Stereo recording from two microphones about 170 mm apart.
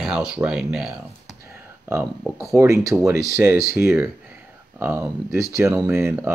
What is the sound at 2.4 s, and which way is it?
Speech, 20° right (ahead or behind).